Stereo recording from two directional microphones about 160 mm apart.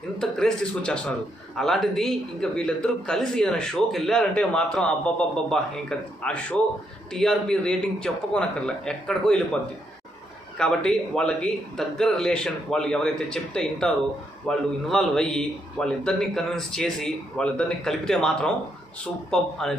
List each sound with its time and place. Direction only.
0.2 s a man's voice: 5° left (ahead or behind)
10.6 s a man's voice: 5° left (ahead or behind)